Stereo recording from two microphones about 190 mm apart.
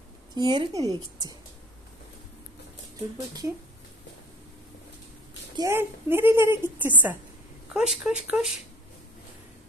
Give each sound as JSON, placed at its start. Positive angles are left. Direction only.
{"t": 0.3, "sound": "a woman's voice", "side_deg": -25}
{"t": 5.6, "sound": "a woman's voice", "side_deg": -10}